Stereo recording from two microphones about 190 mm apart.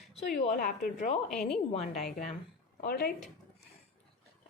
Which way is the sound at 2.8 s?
55° left (ahead or behind).